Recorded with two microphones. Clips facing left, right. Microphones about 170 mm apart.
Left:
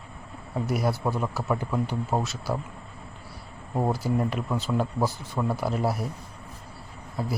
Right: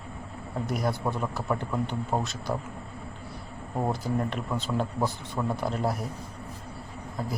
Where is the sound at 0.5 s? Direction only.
10° left (ahead or behind).